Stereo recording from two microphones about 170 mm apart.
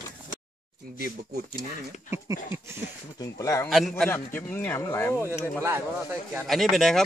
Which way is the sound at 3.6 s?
Centre (ahead or behind).